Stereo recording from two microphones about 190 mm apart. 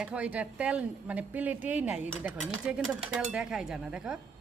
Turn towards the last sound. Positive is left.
turn(degrees=-5)  # may be behind; listen again after turning